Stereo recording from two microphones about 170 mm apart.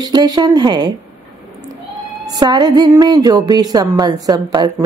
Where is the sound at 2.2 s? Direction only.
25° right (ahead or behind).